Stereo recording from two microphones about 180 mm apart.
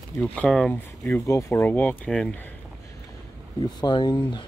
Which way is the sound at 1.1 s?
15° left (ahead or behind).